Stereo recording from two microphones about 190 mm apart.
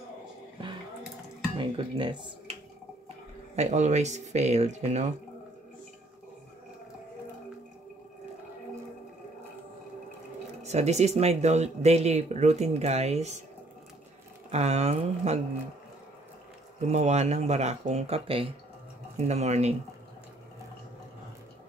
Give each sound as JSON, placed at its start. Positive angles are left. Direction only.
{"t": 1.6, "sound": "speech", "side_deg": -25}
{"t": 3.5, "sound": "speech", "side_deg": -35}
{"t": 10.6, "sound": "speech", "side_deg": -35}
{"t": 14.5, "sound": "speech", "side_deg": -35}
{"t": 16.9, "sound": "speech", "side_deg": -35}